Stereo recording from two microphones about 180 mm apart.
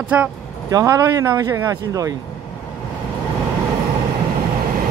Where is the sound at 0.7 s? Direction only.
20° right (ahead or behind).